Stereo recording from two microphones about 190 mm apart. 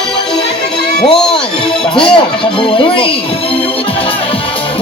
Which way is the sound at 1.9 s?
25° left (ahead or behind).